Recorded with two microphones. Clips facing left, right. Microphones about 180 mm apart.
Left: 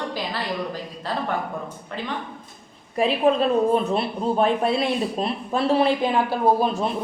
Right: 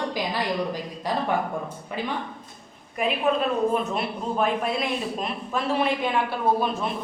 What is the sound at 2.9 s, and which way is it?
A woman's voice, 30° left (ahead or behind).